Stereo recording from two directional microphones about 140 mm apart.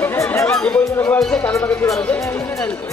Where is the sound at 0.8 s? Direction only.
25° left (ahead or behind).